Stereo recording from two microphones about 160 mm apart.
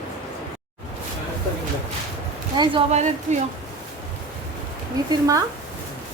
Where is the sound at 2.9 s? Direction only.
45° right (ahead or behind).